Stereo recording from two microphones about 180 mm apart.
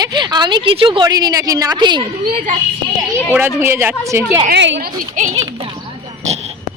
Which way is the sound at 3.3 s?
15° right (ahead or behind).